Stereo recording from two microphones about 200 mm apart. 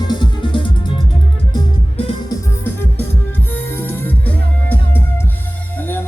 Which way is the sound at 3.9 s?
10° left (ahead or behind).